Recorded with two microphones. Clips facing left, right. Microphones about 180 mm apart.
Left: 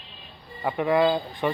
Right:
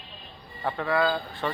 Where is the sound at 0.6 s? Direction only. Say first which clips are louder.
Left 4 dB; 15° left (ahead or behind).